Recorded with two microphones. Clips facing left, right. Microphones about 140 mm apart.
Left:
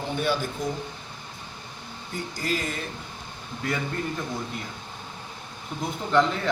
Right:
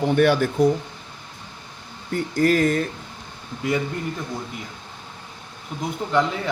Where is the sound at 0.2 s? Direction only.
70° right (ahead or behind).